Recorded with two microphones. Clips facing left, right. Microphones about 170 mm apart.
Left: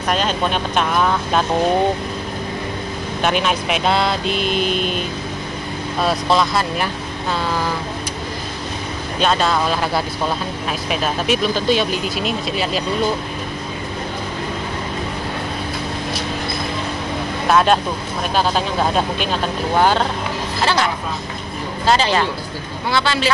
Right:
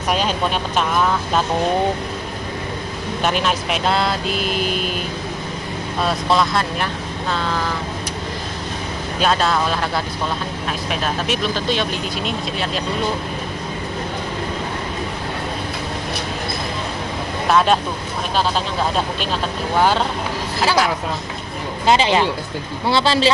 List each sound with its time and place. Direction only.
0.1 s speech: 10° right (ahead or behind)
3.2 s speech: centre (ahead or behind)
6.0 s speech: centre (ahead or behind)
9.2 s speech: centre (ahead or behind)
17.5 s speech: centre (ahead or behind)
20.6 s speech: 5° right (ahead or behind)
21.8 s speech: 20° right (ahead or behind)
22.8 s speech: 30° right (ahead or behind)